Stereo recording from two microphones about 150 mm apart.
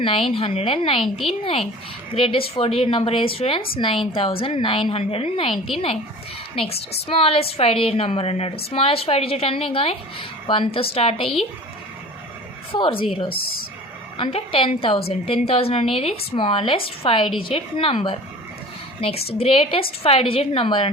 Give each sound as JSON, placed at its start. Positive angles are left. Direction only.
{"t": 0.0, "sound": "a woman's voice", "side_deg": 35}
{"t": 1.0, "sound": "speech", "side_deg": 0}
{"t": 2.1, "sound": "a woman's voice", "side_deg": 35}
{"t": 12.7, "sound": "a woman's voice", "side_deg": 35}
{"t": 13.3, "sound": "speech", "side_deg": 80}
{"t": 14.2, "sound": "a woman's voice", "side_deg": 35}